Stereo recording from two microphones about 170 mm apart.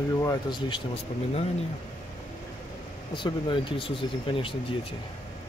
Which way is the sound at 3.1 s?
30° left (ahead or behind).